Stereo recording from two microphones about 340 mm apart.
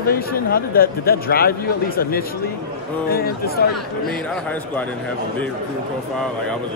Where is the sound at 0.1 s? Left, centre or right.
Left.